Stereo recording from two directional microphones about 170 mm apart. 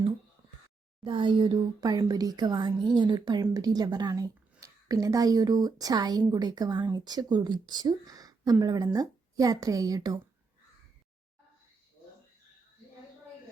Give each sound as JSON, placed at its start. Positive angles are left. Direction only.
{"t": 1.0, "sound": "speech", "side_deg": -30}